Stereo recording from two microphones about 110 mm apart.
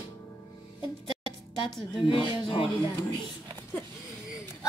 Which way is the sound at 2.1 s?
50° left (ahead or behind).